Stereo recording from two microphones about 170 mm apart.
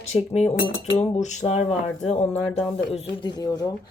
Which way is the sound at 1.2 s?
45° left (ahead or behind).